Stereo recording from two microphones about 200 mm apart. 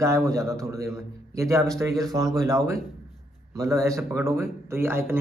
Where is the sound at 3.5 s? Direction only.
15° right (ahead or behind).